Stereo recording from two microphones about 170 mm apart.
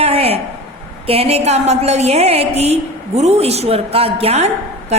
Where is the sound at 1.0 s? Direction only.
35° right (ahead or behind).